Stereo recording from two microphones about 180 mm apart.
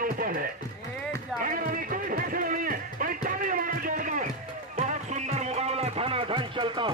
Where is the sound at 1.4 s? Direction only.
50° right (ahead or behind).